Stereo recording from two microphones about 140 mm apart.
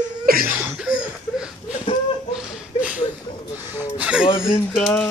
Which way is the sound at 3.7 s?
10° right (ahead or behind).